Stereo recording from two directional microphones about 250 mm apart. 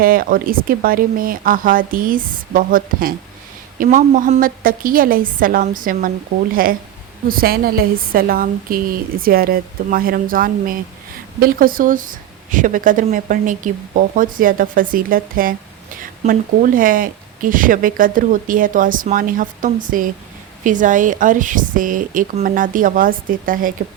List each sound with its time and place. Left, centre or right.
0.0 s speech: right